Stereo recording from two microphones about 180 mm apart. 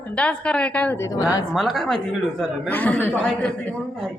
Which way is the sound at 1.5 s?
Centre (ahead or behind).